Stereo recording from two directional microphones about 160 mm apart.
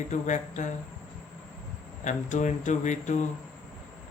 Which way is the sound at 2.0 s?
50° left (ahead or behind).